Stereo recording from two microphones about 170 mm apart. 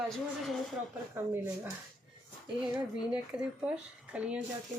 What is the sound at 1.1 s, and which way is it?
Speech, 15° right (ahead or behind).